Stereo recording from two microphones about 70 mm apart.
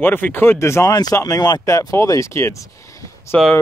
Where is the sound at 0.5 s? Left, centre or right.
Left.